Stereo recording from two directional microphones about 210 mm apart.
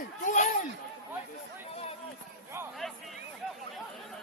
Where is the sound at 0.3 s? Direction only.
35° left (ahead or behind).